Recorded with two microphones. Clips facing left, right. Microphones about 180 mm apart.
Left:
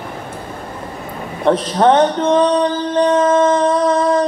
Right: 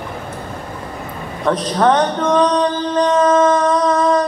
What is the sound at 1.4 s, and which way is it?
Mantra, 25° left (ahead or behind).